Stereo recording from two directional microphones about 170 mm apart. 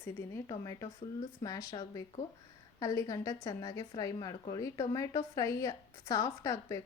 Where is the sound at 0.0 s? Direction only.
15° left (ahead or behind).